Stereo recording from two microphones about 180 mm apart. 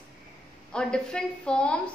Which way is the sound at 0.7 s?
5° left (ahead or behind).